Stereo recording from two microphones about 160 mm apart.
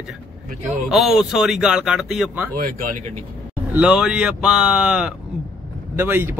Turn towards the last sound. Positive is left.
turn(degrees=-15)  # may be behind; listen again after turning